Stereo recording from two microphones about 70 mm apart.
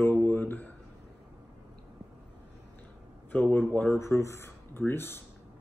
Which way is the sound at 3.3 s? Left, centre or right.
Left.